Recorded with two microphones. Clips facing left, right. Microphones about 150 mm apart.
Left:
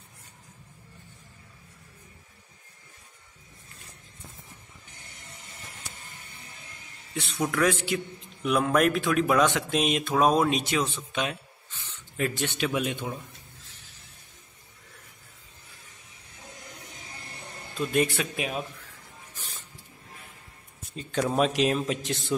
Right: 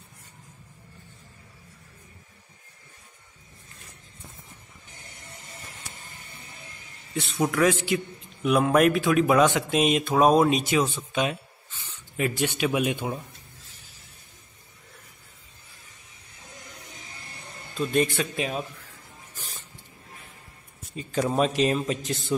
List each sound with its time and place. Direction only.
7.5 s a man's voice: centre (ahead or behind)
17.7 s a man's voice: 5° left (ahead or behind)
20.9 s a man's voice: 5° right (ahead or behind)